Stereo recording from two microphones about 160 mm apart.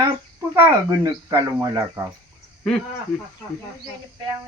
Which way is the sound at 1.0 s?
20° right (ahead or behind).